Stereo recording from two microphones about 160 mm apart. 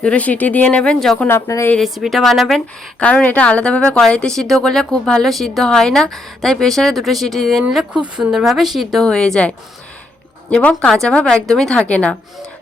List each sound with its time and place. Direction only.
0.0 s speech: 10° left (ahead or behind)
1.3 s speech: 15° left (ahead or behind)
1.7 s speech: centre (ahead or behind)
10.5 s speech: 5° left (ahead or behind)